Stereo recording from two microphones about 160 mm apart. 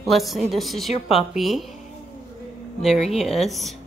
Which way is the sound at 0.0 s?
Centre (ahead or behind).